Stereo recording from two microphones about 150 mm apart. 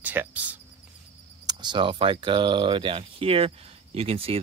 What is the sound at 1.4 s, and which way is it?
Speech, 30° right (ahead or behind).